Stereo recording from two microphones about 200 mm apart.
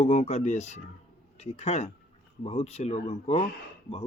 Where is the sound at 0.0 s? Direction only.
35° left (ahead or behind).